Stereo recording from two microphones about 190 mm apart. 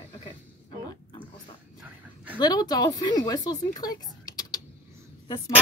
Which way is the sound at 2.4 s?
20° left (ahead or behind).